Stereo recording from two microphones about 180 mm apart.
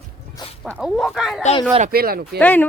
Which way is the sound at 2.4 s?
10° left (ahead or behind).